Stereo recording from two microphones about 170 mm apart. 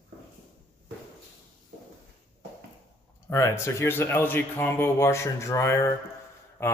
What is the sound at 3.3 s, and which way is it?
A man's voice, 15° left (ahead or behind).